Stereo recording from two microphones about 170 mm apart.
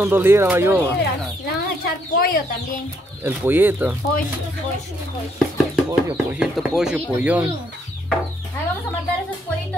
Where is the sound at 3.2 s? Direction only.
10° right (ahead or behind).